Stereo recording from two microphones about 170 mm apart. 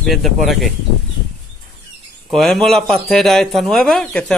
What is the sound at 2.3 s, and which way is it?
Speech, centre (ahead or behind).